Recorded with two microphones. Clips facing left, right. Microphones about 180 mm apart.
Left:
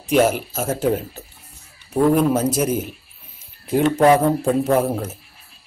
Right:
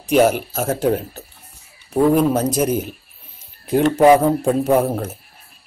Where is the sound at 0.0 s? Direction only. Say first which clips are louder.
Right 2 dB; centre (ahead or behind).